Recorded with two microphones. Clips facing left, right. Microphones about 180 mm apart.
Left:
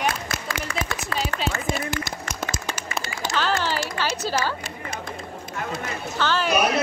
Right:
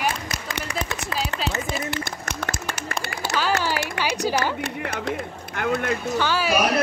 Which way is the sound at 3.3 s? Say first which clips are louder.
Right 1 dB; 10° right (ahead or behind).